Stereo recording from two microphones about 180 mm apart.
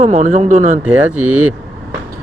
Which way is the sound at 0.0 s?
40° right (ahead or behind).